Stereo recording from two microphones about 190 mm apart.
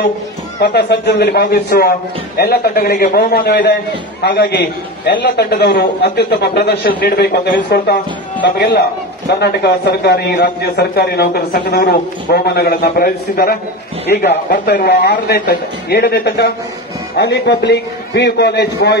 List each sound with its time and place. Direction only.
0.6 s a man's voice: 65° left (ahead or behind)